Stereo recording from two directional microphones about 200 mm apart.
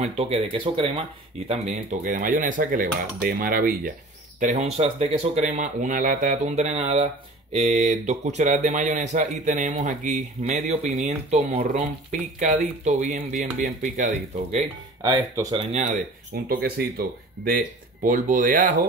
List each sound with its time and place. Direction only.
0.0 s speech: 30° right (ahead or behind)
1.5 s cutlery: 40° right (ahead or behind)
4.4 s speech: 35° right (ahead or behind)
15.0 s speech: 15° right (ahead or behind)
15.5 s speech: 35° right (ahead or behind)
16.4 s cutlery: 50° right (ahead or behind)